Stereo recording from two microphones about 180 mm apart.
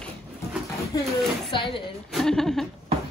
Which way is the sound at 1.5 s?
30° left (ahead or behind).